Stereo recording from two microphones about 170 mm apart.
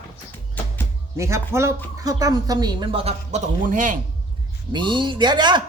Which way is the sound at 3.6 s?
50° right (ahead or behind).